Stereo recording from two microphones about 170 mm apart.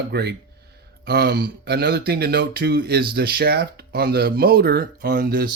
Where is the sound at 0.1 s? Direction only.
70° right (ahead or behind).